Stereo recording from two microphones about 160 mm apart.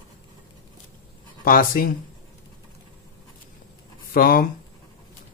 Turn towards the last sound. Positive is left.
turn(degrees=65)  # may be behind; listen again after turning